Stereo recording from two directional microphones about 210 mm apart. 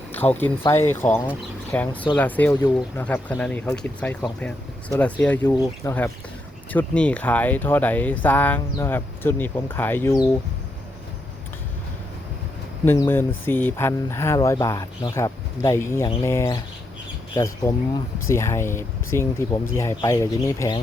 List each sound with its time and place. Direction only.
0.1 s speech: 10° left (ahead or behind)
1.9 s speech: 25° left (ahead or behind)
2.1 s speech: 10° left (ahead or behind)
12.8 s speech: 10° left (ahead or behind)